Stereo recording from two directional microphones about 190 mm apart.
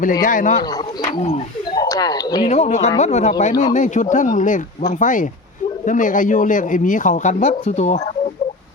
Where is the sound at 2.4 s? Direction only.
40° left (ahead or behind).